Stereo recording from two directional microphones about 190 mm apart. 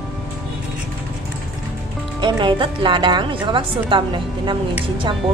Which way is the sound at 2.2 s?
25° right (ahead or behind).